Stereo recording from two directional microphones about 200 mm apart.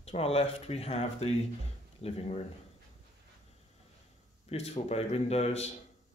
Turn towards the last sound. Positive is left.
turn(degrees=30)  # may be behind; listen again after turning